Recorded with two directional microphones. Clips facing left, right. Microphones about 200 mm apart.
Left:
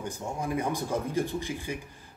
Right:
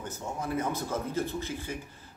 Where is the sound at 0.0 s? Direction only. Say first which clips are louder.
Left 2 dB; 15° left (ahead or behind).